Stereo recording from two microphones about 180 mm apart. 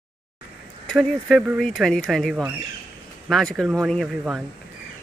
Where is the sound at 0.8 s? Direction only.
5° left (ahead or behind).